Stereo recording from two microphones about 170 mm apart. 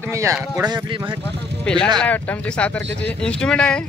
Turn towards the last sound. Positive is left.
turn(degrees=5)  # may be behind; listen again after turning